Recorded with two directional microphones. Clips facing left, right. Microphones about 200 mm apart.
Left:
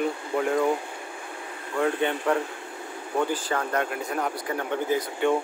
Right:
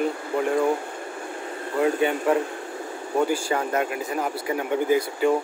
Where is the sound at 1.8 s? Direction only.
10° right (ahead or behind).